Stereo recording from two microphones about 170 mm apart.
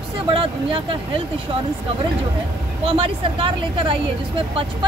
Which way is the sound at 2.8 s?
30° right (ahead or behind).